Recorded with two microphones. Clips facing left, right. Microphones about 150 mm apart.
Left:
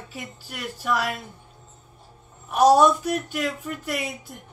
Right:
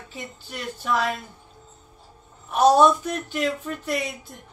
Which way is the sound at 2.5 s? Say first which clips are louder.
Even; 10° left (ahead or behind).